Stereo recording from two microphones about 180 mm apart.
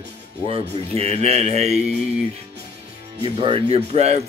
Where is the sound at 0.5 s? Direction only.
35° right (ahead or behind).